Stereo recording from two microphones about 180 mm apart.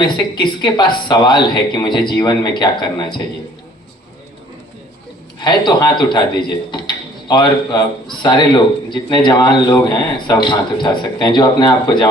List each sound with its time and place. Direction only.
0.0 s a man's voice: 25° left (ahead or behind)
5.4 s a man's voice: 25° left (ahead or behind)